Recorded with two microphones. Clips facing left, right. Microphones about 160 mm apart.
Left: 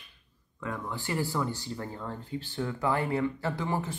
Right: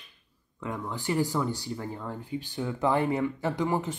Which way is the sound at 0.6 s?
15° right (ahead or behind).